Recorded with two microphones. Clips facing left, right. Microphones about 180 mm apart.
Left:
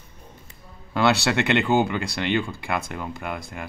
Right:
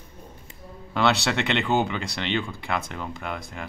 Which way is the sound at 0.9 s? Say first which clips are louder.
Left 2 dB; 10° left (ahead or behind).